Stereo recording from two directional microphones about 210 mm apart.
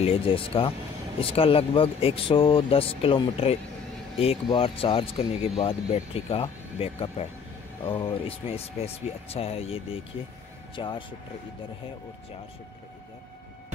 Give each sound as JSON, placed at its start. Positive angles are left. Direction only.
{"t": 0.0, "sound": "speech", "side_deg": 25}